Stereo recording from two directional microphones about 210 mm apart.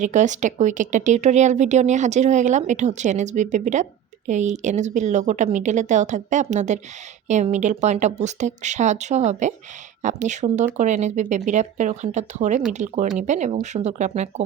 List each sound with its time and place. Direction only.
0.0 s speech: 35° right (ahead or behind)